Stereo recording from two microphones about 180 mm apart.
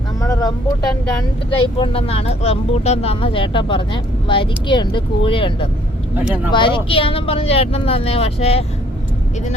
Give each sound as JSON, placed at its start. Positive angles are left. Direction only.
{"t": 0.2, "sound": "vehicle", "side_deg": 20}
{"t": 1.5, "sound": "speech", "side_deg": 30}
{"t": 6.2, "sound": "speech", "side_deg": -10}
{"t": 6.5, "sound": "speech", "side_deg": 25}